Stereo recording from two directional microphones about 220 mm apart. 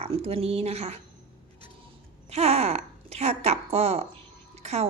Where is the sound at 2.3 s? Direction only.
30° right (ahead or behind).